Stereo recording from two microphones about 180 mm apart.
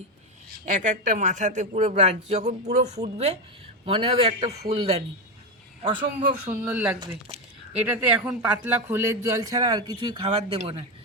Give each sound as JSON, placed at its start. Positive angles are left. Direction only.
{"t": 0.6, "sound": "speech", "side_deg": -45}
{"t": 5.8, "sound": "a man's voice", "side_deg": -30}
{"t": 6.5, "sound": "speech", "side_deg": -10}